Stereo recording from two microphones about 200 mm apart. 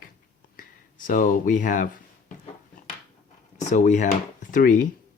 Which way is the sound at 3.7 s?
35° left (ahead or behind).